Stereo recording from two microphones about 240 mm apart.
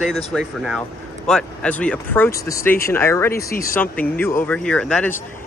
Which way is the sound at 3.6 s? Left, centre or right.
Centre.